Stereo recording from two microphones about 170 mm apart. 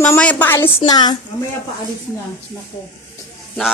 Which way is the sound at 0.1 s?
10° left (ahead or behind).